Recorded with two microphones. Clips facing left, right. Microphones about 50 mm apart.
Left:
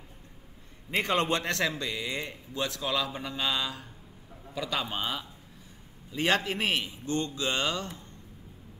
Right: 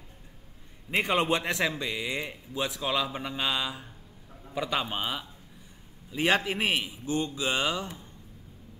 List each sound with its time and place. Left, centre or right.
0.8 s a man's voice: centre